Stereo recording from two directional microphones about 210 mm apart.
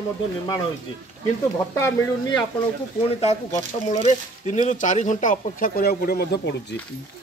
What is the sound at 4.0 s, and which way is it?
Speech, 35° left (ahead or behind).